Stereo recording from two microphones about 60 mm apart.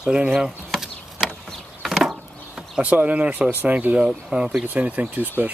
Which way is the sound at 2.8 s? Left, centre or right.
Right.